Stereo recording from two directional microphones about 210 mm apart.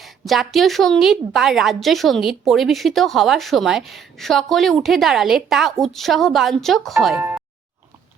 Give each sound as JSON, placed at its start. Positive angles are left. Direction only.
{"t": 0.0, "sound": "a woman's voice", "side_deg": 0}